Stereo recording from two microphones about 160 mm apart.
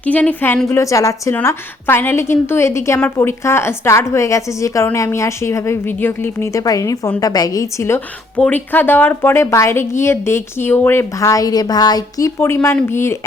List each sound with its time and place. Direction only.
0.0 s a woman's voice: 10° left (ahead or behind)